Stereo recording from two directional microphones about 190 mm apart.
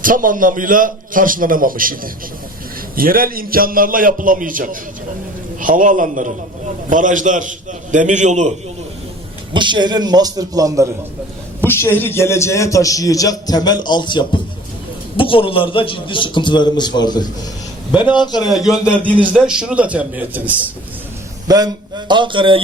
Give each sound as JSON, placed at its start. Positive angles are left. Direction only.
{"t": 0.0, "sound": "a man's voice", "side_deg": -45}
{"t": 9.5, "sound": "a man's voice", "side_deg": -25}
{"t": 11.6, "sound": "a man's voice", "side_deg": 10}
{"t": 18.5, "sound": "a man's voice", "side_deg": 0}
{"t": 21.4, "sound": "a man's voice", "side_deg": -20}